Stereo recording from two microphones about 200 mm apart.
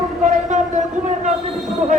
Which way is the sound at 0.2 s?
35° right (ahead or behind).